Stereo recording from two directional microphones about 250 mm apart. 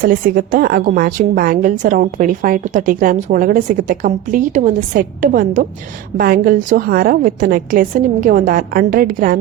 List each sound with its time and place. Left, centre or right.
0.0 s a woman's voice: right